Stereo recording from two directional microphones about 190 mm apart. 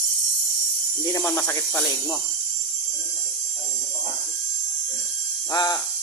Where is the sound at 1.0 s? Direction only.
15° left (ahead or behind).